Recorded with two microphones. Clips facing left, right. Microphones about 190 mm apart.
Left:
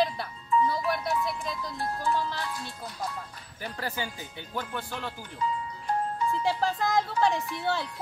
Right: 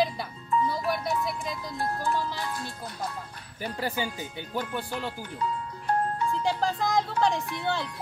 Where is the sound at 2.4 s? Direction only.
50° right (ahead or behind).